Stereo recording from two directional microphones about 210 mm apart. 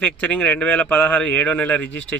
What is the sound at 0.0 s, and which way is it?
Speech, 5° left (ahead or behind).